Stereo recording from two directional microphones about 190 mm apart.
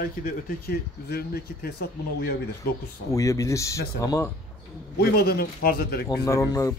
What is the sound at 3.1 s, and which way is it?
Speech, 15° left (ahead or behind).